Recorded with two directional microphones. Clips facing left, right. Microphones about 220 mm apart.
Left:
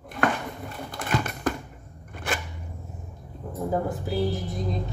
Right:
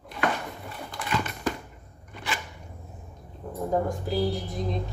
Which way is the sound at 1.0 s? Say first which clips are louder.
Left 2 dB; 50° left (ahead or behind).